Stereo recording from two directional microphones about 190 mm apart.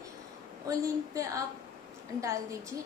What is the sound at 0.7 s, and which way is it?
Speech, 15° right (ahead or behind).